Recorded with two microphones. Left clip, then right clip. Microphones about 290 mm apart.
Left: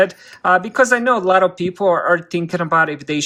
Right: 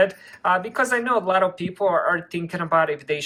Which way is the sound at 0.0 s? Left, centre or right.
Left.